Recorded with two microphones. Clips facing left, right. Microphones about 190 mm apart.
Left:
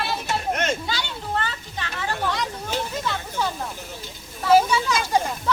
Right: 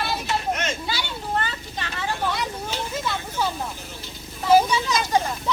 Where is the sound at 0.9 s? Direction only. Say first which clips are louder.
Even; 10° right (ahead or behind).